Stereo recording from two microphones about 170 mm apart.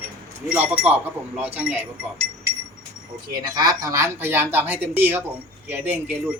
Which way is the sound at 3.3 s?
25° right (ahead or behind).